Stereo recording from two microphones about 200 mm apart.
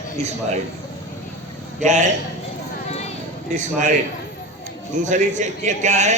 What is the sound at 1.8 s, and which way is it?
Speech, 40° right (ahead or behind).